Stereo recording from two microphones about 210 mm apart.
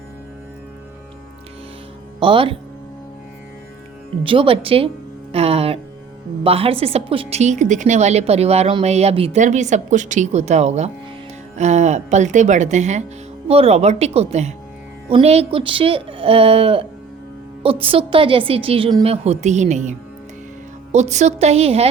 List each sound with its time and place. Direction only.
2.1 s speech: 25° right (ahead or behind)
4.2 s a woman's voice: 25° right (ahead or behind)